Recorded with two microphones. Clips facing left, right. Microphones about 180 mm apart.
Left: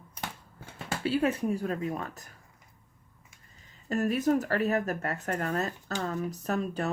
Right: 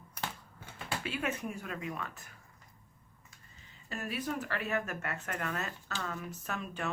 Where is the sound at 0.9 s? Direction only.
35° left (ahead or behind).